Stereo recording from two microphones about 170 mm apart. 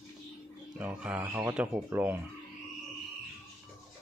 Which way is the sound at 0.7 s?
10° right (ahead or behind).